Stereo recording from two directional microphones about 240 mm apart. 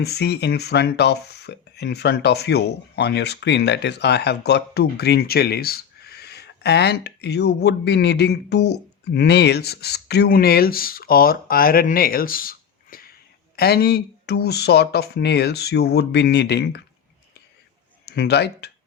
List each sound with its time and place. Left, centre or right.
0.0 s speech: left
18.0 s speech: left